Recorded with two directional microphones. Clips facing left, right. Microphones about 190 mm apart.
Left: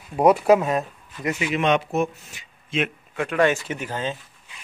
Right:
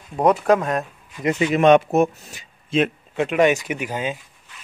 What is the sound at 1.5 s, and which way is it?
A man's voice, 45° right (ahead or behind).